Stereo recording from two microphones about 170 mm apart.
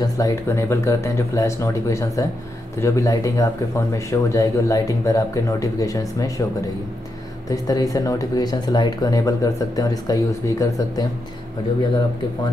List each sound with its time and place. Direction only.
0.0 s speech: 20° left (ahead or behind)
7.4 s speech: 20° left (ahead or behind)